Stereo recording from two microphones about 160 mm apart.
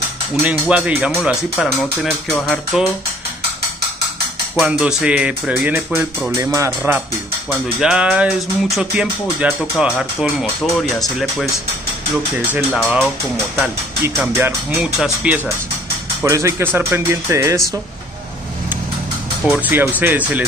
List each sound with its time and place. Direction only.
0.5 s music: 5° right (ahead or behind)
4.6 s music: 5° right (ahead or behind)
6.3 s speech: 20° right (ahead or behind)
7.8 s music: 5° right (ahead or behind)
12.5 s music: 5° right (ahead or behind)
14.2 s speech: 15° right (ahead or behind)
19.5 s speech: 10° right (ahead or behind)